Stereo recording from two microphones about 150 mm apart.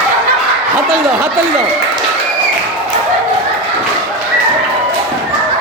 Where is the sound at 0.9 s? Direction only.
15° right (ahead or behind).